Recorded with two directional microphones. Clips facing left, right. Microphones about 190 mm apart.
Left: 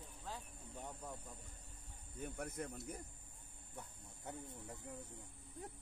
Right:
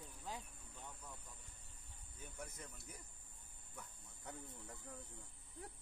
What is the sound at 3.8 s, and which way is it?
Speech, 20° left (ahead or behind).